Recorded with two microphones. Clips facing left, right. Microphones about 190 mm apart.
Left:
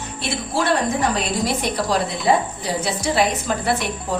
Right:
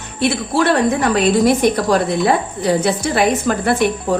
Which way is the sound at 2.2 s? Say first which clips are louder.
Right 3 dB; 65° right (ahead or behind).